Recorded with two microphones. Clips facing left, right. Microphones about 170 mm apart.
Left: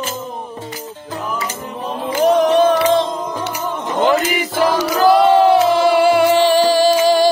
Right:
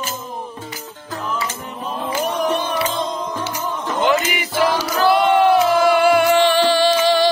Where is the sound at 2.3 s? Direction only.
90° left.